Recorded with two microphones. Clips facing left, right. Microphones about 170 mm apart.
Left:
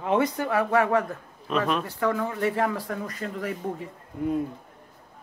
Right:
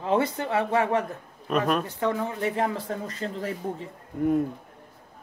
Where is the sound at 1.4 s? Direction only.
45° right (ahead or behind).